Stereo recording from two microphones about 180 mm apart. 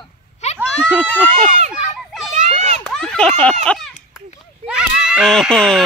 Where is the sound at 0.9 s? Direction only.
5° left (ahead or behind).